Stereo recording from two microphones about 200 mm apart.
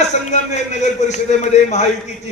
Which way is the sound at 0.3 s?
35° left (ahead or behind).